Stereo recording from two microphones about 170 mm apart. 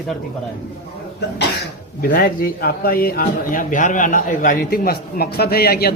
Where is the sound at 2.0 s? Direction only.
60° left (ahead or behind).